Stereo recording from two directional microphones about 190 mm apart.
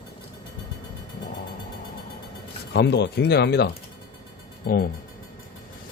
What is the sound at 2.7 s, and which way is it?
Speech, 60° left (ahead or behind).